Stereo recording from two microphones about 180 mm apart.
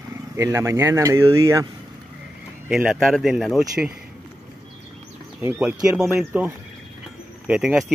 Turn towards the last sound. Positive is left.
turn(degrees=-5)  # may be behind; listen again after turning